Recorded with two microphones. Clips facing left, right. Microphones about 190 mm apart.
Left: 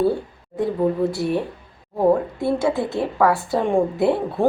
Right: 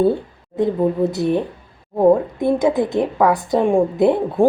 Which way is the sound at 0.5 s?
20° right (ahead or behind).